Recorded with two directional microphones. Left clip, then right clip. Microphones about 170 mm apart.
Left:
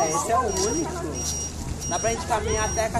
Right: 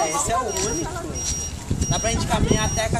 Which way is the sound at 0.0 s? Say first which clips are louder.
Even; 45° right (ahead or behind).